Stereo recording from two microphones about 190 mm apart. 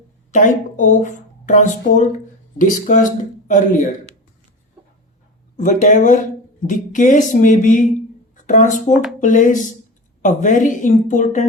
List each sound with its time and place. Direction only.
0.3 s speech: 40° left (ahead or behind)
5.5 s speech: 40° left (ahead or behind)